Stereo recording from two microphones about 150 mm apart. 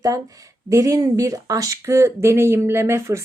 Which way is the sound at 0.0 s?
25° right (ahead or behind).